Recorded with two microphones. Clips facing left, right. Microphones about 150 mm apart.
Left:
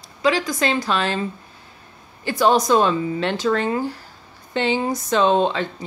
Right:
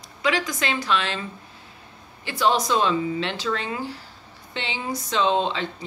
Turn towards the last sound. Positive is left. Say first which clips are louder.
# left 4 dB
turn(degrees=50)  # may be behind; listen again after turning